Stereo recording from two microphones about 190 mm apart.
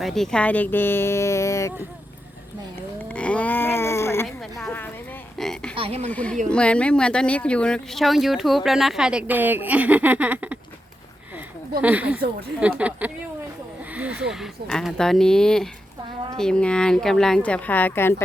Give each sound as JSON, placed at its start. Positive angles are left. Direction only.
{"t": 0.0, "sound": "speech", "side_deg": 0}
{"t": 3.1, "sound": "a sound", "side_deg": 5}
{"t": 4.5, "sound": "speech", "side_deg": 5}
{"t": 5.7, "sound": "speech", "side_deg": -30}
{"t": 6.1, "sound": "speech", "side_deg": 10}
{"t": 11.8, "sound": "speech", "side_deg": -10}